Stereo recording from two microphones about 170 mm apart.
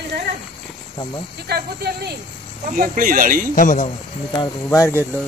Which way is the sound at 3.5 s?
50° left (ahead or behind).